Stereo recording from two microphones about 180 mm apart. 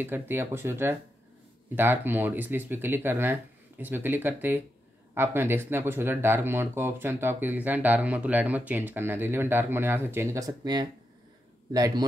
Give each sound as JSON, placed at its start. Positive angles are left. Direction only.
{"t": 0.0, "sound": "speech", "side_deg": -10}